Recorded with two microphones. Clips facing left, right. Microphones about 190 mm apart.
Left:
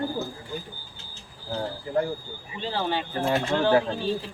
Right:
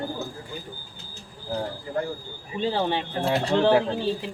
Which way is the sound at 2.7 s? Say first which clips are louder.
Left 2 dB; 20° right (ahead or behind).